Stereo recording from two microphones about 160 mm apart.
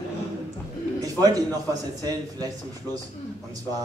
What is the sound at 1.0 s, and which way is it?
A man's voice, 25° right (ahead or behind).